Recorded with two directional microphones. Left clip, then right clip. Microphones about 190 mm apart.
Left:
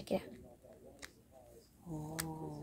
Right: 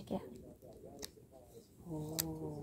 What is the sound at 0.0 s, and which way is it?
Speech, 20° left (ahead or behind).